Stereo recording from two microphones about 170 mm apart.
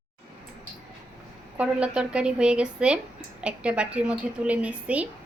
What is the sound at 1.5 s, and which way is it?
A woman's voice, 5° right (ahead or behind).